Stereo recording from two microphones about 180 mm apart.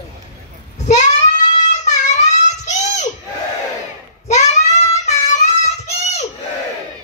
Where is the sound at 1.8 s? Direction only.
40° left (ahead or behind).